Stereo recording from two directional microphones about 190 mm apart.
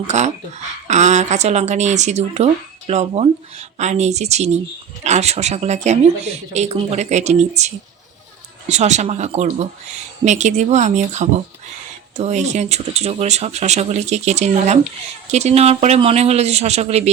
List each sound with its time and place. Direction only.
0.1 s speech: 40° right (ahead or behind)